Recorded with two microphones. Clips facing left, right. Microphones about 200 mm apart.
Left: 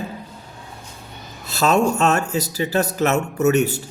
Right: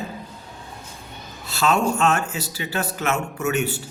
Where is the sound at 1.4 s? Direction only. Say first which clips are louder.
Left 3 dB; 40° left (ahead or behind).